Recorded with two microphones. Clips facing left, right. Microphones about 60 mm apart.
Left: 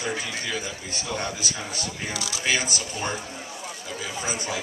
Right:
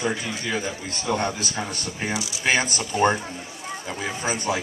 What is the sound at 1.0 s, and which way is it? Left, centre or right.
A man's voice, right.